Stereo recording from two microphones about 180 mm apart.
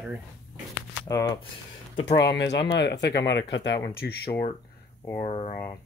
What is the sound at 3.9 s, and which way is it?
Speech, 60° left (ahead or behind).